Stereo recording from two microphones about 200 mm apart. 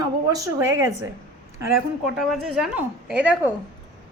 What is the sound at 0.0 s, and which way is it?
A woman's voice, 15° right (ahead or behind).